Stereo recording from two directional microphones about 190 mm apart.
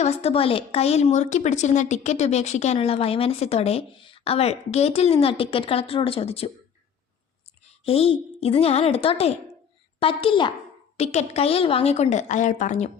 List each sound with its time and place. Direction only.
0.0 s a woman's voice: 35° left (ahead or behind)
7.9 s a woman's voice: 30° left (ahead or behind)